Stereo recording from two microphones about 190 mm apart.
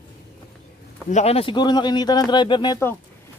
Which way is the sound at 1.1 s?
30° left (ahead or behind).